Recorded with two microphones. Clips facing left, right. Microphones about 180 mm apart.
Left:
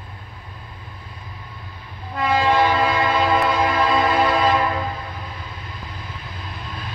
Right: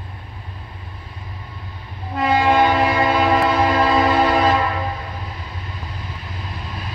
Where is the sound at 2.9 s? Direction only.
35° right (ahead or behind).